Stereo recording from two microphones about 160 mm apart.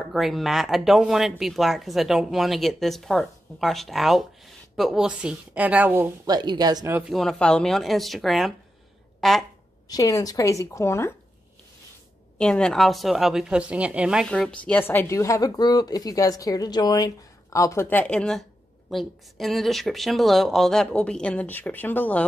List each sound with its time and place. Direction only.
0.1 s a woman's voice: centre (ahead or behind)
6.2 s a woman's voice: 25° right (ahead or behind)
7.0 s speech: centre (ahead or behind)
9.8 s a woman's voice: 20° left (ahead or behind)
12.4 s speech: 5° left (ahead or behind)
14.2 s a woman's voice: 5° left (ahead or behind)